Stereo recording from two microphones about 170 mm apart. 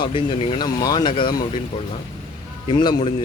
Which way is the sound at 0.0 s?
30° left (ahead or behind).